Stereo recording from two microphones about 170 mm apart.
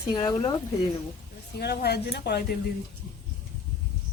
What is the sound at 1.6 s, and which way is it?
Speech, 70° left (ahead or behind).